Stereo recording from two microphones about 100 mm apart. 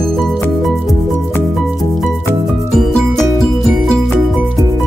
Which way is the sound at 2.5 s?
Centre (ahead or behind).